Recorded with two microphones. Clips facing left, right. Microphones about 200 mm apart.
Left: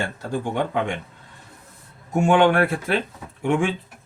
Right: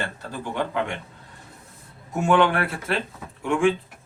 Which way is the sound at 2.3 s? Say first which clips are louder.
Left 2 dB; 50° left (ahead or behind).